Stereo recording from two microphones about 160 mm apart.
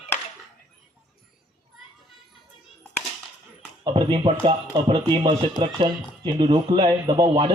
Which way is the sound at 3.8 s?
30° right (ahead or behind).